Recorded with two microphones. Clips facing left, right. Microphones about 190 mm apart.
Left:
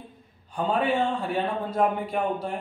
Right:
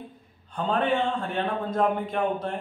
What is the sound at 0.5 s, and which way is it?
A man's voice, 10° left (ahead or behind).